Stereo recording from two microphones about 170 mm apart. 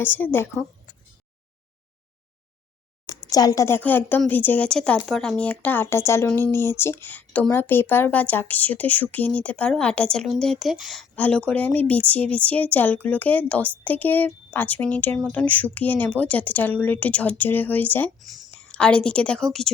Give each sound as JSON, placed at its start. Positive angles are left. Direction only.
{"t": 0.0, "sound": "speech", "side_deg": 10}
{"t": 3.1, "sound": "speech", "side_deg": 20}
{"t": 18.2, "sound": "a woman's voice", "side_deg": 0}